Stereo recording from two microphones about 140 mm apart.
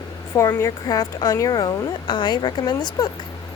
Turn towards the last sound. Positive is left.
turn(degrees=30)  # may be behind; listen again after turning